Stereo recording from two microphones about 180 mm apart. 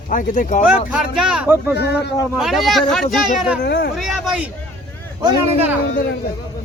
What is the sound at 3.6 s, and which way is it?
Speech, 60° left (ahead or behind).